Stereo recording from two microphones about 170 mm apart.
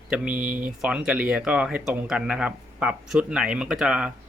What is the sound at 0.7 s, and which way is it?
Speech, 5° right (ahead or behind).